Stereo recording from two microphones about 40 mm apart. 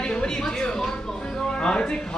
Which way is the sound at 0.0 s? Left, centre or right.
Left.